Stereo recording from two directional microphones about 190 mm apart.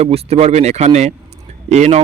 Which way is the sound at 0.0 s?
35° right (ahead or behind).